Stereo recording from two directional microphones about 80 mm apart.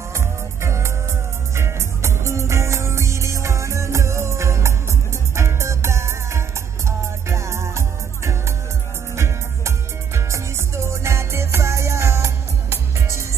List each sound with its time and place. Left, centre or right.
0.1 s music: right